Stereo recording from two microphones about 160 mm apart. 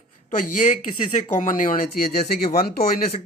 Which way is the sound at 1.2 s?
50° left (ahead or behind).